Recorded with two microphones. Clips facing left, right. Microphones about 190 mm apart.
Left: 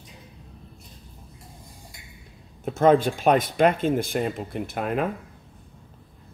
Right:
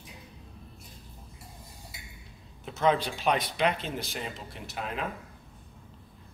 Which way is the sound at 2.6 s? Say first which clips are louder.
Left 8 dB; 50° left (ahead or behind).